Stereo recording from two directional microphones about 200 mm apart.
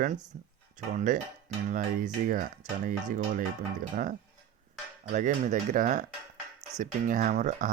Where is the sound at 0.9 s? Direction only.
40° right (ahead or behind).